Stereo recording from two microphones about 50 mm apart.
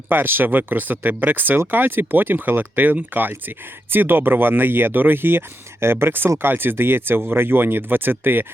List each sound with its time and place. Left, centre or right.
0.1 s speech: right